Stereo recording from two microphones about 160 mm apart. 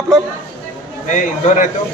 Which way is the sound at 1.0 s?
50° left (ahead or behind).